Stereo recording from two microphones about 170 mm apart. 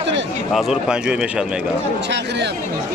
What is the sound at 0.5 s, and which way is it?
Speech, centre (ahead or behind).